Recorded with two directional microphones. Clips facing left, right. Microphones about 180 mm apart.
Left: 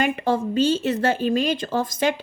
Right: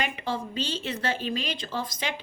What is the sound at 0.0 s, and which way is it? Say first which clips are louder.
Speech: left 9 dB; 50° left (ahead or behind).